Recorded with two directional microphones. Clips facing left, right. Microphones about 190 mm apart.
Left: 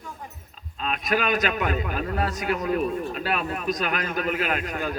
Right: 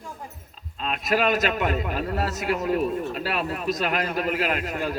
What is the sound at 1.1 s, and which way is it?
A man's voice, centre (ahead or behind).